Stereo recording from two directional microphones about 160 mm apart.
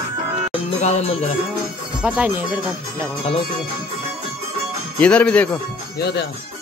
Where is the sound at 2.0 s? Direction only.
10° right (ahead or behind).